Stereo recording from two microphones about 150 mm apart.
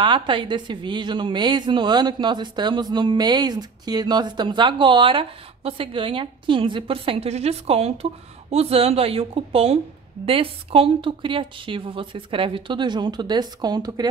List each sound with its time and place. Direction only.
0.0 s a woman's voice: 30° right (ahead or behind)